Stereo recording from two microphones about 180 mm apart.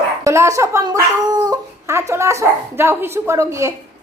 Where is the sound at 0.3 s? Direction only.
15° right (ahead or behind).